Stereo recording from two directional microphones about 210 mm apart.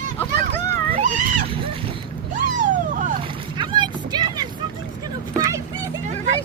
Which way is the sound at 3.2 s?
25° right (ahead or behind).